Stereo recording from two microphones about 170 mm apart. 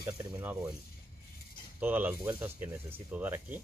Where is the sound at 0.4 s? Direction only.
10° right (ahead or behind).